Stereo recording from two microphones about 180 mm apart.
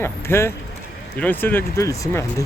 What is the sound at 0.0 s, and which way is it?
Speech, 15° left (ahead or behind).